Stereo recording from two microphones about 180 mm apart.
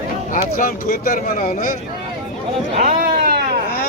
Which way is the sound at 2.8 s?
55° right (ahead or behind).